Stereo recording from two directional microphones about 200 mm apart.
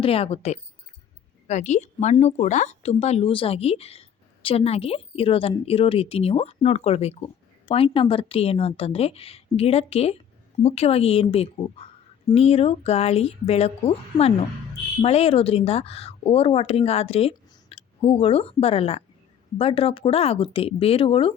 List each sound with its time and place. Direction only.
0.0 s speech: 30° left (ahead or behind)